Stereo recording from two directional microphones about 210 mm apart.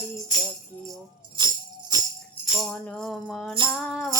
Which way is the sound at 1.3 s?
20° right (ahead or behind).